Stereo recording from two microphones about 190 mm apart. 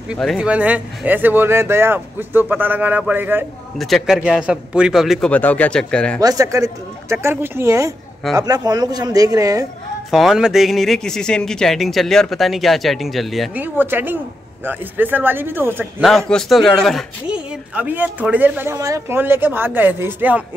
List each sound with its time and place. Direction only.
0.1 s speech: centre (ahead or behind)
3.7 s speech: centre (ahead or behind)
6.2 s speech: 15° right (ahead or behind)
10.1 s speech: centre (ahead or behind)
13.7 s speech: 10° right (ahead or behind)
15.8 s speech: centre (ahead or behind)